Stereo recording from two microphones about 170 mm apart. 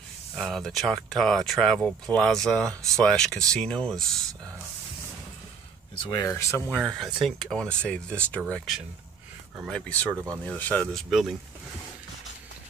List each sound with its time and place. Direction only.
0.4 s speech: centre (ahead or behind)
5.9 s speech: 20° left (ahead or behind)
6.7 s speech: centre (ahead or behind)